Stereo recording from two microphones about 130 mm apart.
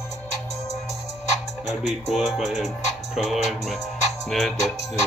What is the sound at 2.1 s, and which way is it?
Speech, centre (ahead or behind).